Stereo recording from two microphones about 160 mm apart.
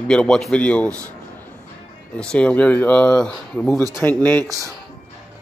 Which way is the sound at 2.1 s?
5° left (ahead or behind).